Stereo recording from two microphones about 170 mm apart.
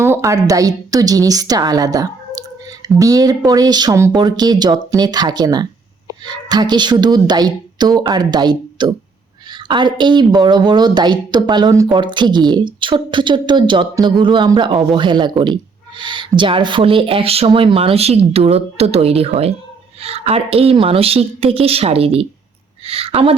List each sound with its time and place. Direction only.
0.0 s a woman's voice: 15° right (ahead or behind); by 23.3 s 35° right (ahead or behind)